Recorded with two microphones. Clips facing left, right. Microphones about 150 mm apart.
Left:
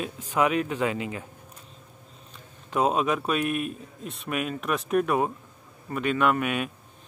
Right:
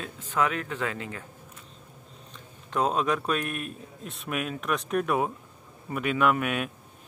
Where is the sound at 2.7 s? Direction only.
5° left (ahead or behind).